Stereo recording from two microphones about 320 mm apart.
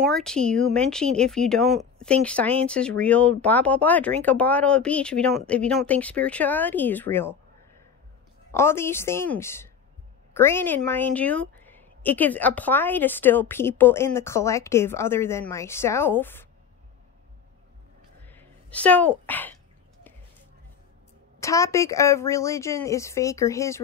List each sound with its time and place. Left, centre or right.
0.0 s speech: centre
8.5 s a woman's voice: centre
18.2 s a sound: centre
21.4 s a woman's voice: centre